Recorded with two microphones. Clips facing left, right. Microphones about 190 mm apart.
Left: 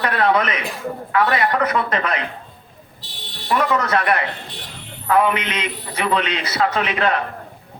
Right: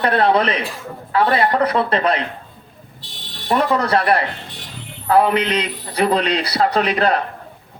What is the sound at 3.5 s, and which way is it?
A man's voice, 35° right (ahead or behind).